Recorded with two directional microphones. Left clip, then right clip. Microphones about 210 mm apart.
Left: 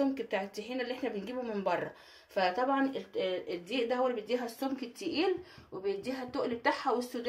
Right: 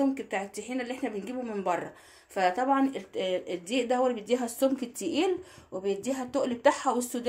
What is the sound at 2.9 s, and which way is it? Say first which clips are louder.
A woman's voice: right 3 dB; 35° right (ahead or behind).